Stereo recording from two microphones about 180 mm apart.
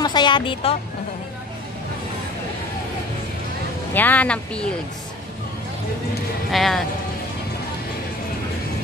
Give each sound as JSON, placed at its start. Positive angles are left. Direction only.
{"t": 0.0, "sound": "speech", "side_deg": 25}
{"t": 3.9, "sound": "speech", "side_deg": 10}
{"t": 6.5, "sound": "speech", "side_deg": 0}